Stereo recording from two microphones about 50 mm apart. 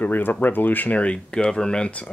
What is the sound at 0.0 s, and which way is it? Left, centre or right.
Speech, left.